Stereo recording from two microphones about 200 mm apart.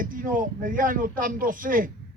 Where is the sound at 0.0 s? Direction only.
45° right (ahead or behind).